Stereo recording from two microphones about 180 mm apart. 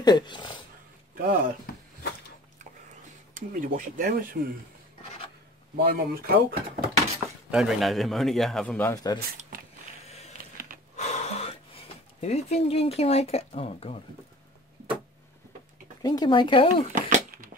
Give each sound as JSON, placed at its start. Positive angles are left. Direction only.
{"t": 0.0, "sound": "speech", "side_deg": 25}
{"t": 1.1, "sound": "speech", "side_deg": -50}
{"t": 3.3, "sound": "speech", "side_deg": -45}
{"t": 5.9, "sound": "speech", "side_deg": -55}
{"t": 7.5, "sound": "a man's voice", "side_deg": 0}
{"t": 8.9, "sound": "speech", "side_deg": 20}
{"t": 10.0, "sound": "a sound", "side_deg": 35}
{"t": 11.0, "sound": "gasp", "side_deg": 40}
{"t": 16.0, "sound": "speech", "side_deg": 20}
{"t": 16.9, "sound": "a sound", "side_deg": -50}